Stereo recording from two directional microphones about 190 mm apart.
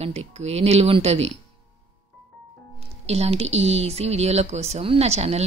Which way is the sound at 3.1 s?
35° right (ahead or behind).